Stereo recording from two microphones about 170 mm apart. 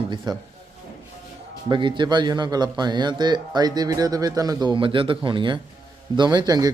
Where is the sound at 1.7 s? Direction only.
30° right (ahead or behind).